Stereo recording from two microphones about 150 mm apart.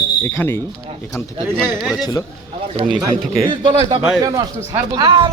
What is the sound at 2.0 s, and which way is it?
Speech, 25° left (ahead or behind).